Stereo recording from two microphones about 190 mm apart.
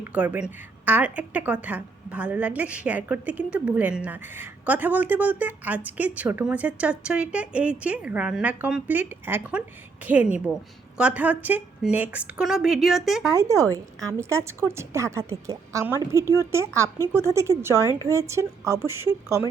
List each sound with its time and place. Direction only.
0.0 s a woman's voice: 10° right (ahead or behind)
13.3 s a woman's voice: 15° right (ahead or behind)
16.2 s speech: 15° left (ahead or behind)
16.5 s a woman's voice: 15° right (ahead or behind)